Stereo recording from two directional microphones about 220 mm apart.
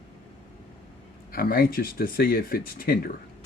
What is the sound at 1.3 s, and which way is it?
Speech, 40° left (ahead or behind).